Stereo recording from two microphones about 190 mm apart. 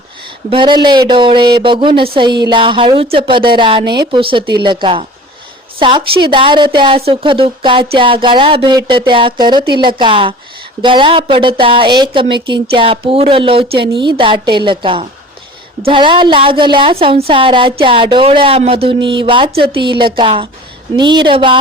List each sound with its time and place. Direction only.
0.5 s speech: 25° right (ahead or behind)